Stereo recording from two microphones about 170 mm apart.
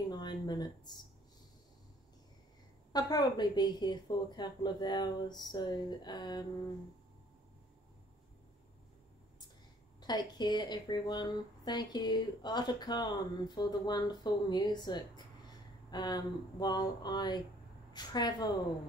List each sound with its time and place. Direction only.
0.1 s a sound: 25° left (ahead or behind)
2.9 s speech: 25° left (ahead or behind)
10.0 s speech: 25° left (ahead or behind)